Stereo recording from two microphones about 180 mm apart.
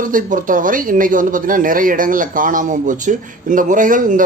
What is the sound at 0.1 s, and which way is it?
Speech, 50° right (ahead or behind).